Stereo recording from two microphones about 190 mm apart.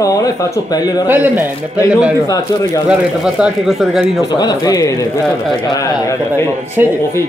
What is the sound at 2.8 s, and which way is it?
Speech, 5° right (ahead or behind).